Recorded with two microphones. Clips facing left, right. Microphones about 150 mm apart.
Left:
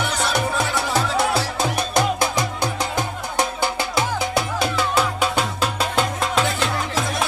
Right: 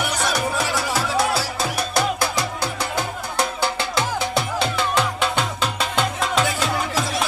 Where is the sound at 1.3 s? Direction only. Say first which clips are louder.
Left 2 dB; 20° left (ahead or behind); by 6.5 s centre (ahead or behind).